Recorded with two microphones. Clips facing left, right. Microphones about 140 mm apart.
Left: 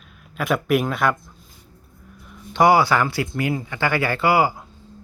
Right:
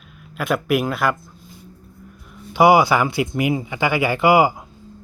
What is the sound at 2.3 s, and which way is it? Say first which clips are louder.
Speech: right 2 dB; 10° right (ahead or behind).